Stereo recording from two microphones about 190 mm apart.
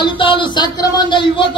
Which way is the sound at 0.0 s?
25° left (ahead or behind).